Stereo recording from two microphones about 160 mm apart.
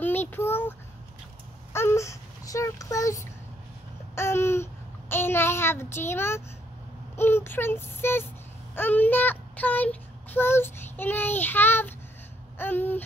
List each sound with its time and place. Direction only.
0.0 s child singing: 10° left (ahead or behind)
1.7 s a sound: 15° left (ahead or behind)
4.1 s babbling: 15° left (ahead or behind)
5.1 s a child's voice: 15° left (ahead or behind)
7.2 s child singing: 15° left (ahead or behind)